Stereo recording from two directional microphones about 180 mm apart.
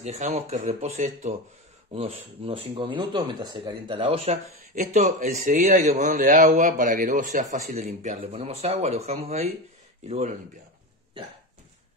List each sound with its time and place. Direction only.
0.0 s speech: 35° right (ahead or behind)